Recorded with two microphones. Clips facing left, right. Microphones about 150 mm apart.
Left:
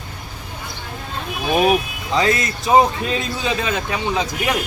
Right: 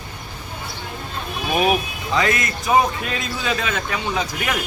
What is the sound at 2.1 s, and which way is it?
A man's voice, 30° left (ahead or behind).